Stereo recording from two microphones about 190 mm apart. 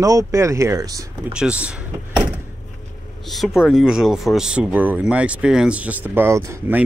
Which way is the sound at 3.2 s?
Centre (ahead or behind).